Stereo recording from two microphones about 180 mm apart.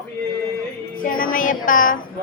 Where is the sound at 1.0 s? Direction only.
50° left (ahead or behind).